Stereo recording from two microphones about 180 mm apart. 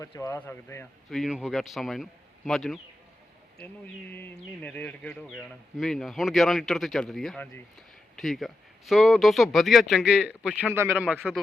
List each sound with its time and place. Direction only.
0.0 s speech: 15° left (ahead or behind)
1.1 s speech: centre (ahead or behind)